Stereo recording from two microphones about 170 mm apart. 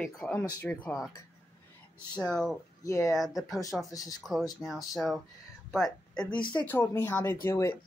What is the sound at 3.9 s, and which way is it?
Speech, 20° left (ahead or behind).